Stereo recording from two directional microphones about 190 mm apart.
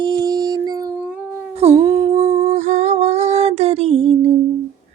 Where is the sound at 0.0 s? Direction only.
25° right (ahead or behind).